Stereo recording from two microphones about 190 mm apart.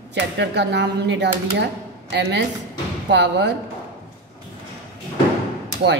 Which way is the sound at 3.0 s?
65° right (ahead or behind).